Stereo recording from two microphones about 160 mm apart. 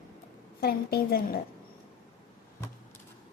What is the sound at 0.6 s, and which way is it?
Speech, 75° left (ahead or behind).